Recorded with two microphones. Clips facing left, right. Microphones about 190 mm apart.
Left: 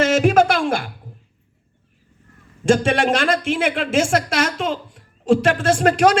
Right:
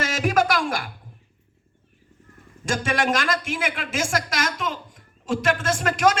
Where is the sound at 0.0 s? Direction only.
25° left (ahead or behind).